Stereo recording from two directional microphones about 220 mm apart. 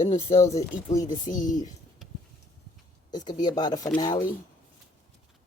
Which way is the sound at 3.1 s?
20° left (ahead or behind).